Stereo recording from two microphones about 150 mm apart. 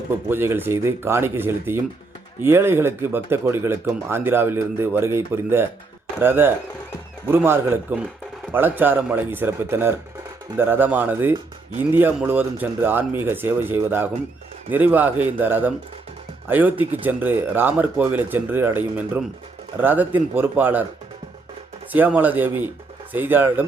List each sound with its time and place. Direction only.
0.3 s speech: 15° right (ahead or behind)
21.9 s speech: 10° right (ahead or behind)